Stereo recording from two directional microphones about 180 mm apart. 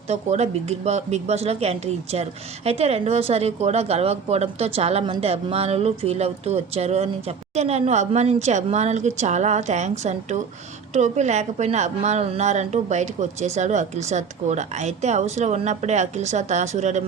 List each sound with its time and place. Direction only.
0.1 s a woman's voice: 40° right (ahead or behind)